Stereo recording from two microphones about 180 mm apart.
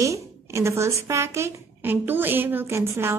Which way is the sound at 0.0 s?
15° right (ahead or behind).